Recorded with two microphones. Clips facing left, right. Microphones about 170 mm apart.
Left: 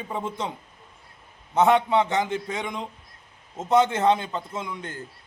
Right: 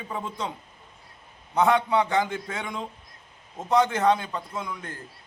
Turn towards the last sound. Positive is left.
turn(degrees=25)  # may be behind; listen again after turning